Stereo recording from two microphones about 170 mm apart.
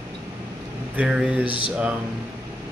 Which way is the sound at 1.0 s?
5° right (ahead or behind).